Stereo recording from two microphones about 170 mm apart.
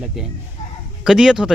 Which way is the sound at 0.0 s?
Centre (ahead or behind).